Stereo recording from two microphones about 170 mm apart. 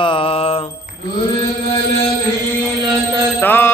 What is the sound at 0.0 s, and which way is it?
Mantra, 30° left (ahead or behind).